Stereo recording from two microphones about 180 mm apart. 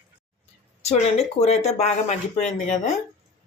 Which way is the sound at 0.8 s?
35° left (ahead or behind).